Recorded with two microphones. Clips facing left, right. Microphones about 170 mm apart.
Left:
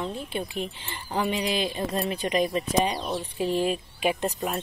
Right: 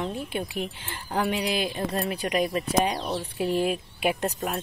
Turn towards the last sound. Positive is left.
turn(degrees=0)  # may be behind; listen again after turning